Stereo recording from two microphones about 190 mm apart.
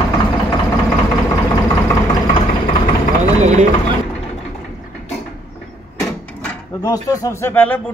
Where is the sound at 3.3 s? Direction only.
35° right (ahead or behind).